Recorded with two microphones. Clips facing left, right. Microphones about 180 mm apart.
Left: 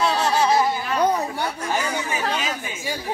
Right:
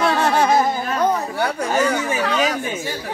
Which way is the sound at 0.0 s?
55° right (ahead or behind).